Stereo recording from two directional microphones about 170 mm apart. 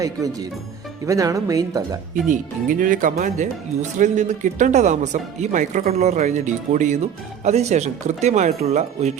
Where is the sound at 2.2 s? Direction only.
50° right (ahead or behind).